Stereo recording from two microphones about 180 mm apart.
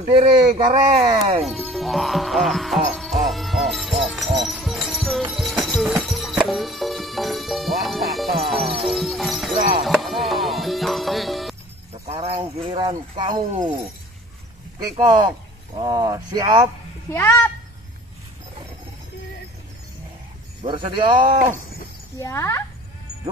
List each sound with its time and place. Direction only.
0.1 s speech: 25° right (ahead or behind)
1.4 s speech: centre (ahead or behind)
2.9 s music: centre (ahead or behind)
11.9 s speech: 35° right (ahead or behind)
15.0 s speech: 20° right (ahead or behind)
17.1 s speech: 15° left (ahead or behind)
20.6 s speech: 25° right (ahead or behind)
22.2 s speech: 15° left (ahead or behind)